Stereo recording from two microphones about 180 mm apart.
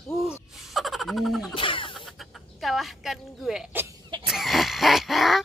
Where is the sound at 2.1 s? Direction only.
Centre (ahead or behind).